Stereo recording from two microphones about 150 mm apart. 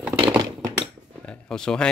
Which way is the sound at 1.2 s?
5° left (ahead or behind).